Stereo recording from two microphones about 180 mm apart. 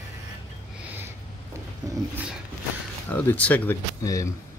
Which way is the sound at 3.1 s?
10° left (ahead or behind).